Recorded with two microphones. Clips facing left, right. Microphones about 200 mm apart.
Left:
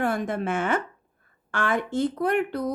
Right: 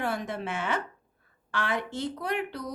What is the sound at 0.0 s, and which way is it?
Speech, 50° left (ahead or behind).